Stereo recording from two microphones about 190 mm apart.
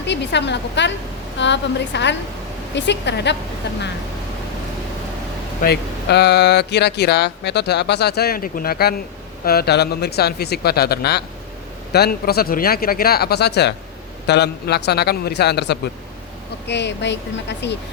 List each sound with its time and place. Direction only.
0.0 s a woman's voice: 65° left (ahead or behind)
5.6 s speech: 60° left (ahead or behind)